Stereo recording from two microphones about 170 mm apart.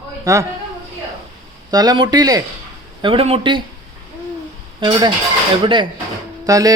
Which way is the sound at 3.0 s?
35° right (ahead or behind).